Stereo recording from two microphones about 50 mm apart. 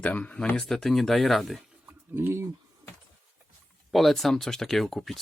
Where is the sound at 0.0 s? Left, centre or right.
Left.